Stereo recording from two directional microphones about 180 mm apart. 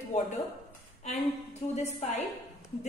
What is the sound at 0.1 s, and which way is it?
A woman's voice, 40° left (ahead or behind).